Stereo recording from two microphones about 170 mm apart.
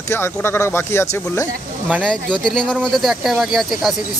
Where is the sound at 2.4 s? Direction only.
5° left (ahead or behind).